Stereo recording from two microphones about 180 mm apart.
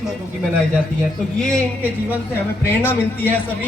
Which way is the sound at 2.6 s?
10° left (ahead or behind).